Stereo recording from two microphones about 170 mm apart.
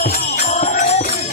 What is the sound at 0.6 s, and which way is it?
Music, 45° left (ahead or behind).